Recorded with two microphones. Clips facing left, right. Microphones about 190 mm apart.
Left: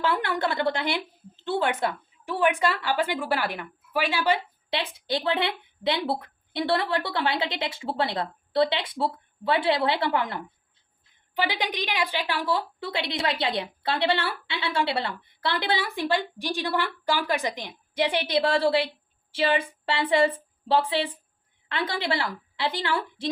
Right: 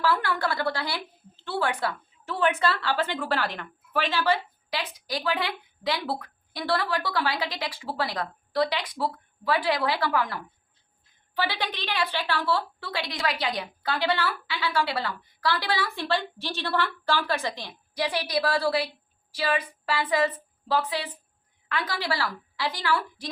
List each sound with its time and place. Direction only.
0.0 s a woman's voice: 20° left (ahead or behind)
4.7 s a woman's voice: 25° left (ahead or behind)